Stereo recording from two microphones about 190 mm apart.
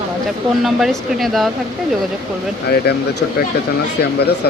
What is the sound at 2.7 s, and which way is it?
Speech, 55° left (ahead or behind).